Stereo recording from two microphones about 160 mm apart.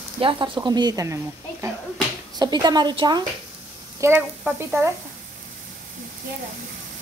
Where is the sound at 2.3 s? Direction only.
25° right (ahead or behind).